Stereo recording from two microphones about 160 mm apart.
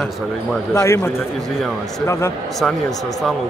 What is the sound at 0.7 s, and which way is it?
A man's voice, 15° left (ahead or behind).